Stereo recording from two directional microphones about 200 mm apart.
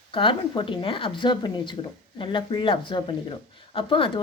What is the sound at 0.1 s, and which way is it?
Speech, 25° left (ahead or behind).